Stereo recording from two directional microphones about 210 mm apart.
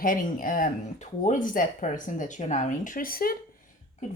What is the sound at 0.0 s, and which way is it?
Speech, 40° left (ahead or behind).